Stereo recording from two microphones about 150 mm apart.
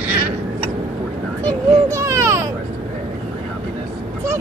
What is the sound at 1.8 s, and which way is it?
Baby cry, 20° right (ahead or behind).